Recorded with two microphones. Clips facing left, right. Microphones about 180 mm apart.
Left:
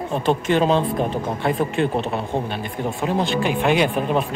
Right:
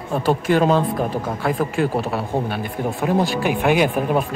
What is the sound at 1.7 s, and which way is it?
Speech, 5° right (ahead or behind).